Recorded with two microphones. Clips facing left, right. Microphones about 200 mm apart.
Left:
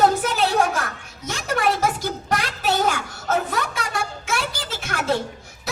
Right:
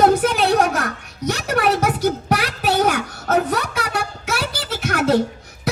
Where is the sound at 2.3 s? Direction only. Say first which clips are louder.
Right 3 dB; 60° right (ahead or behind).